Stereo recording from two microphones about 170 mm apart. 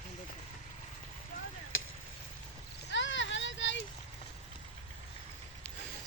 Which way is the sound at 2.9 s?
90° left.